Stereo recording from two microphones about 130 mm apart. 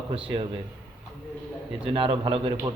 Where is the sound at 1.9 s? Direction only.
45° right (ahead or behind).